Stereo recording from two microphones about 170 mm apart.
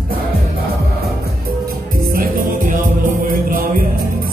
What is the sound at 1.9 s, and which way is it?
Music, 55° right (ahead or behind).